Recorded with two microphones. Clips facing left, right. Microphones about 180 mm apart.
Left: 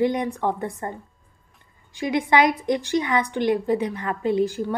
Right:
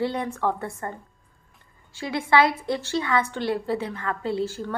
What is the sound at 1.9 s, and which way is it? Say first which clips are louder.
A woman's voice: left 2 dB; 15° left (ahead or behind).